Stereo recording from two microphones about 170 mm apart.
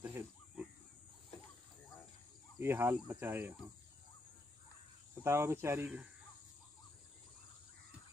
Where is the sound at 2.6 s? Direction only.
15° right (ahead or behind).